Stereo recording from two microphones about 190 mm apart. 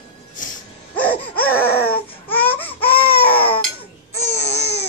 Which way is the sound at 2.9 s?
55° left (ahead or behind).